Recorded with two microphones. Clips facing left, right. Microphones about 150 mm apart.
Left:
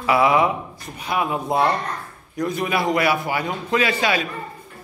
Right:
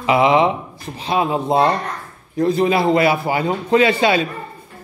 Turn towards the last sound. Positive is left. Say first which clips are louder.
# right 6 dB
turn(degrees=-25)  # may be behind; listen again after turning